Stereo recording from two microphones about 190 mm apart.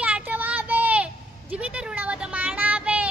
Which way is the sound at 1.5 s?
5° right (ahead or behind).